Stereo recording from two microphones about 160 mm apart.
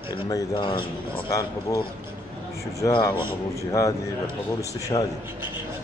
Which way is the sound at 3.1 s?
30° left (ahead or behind).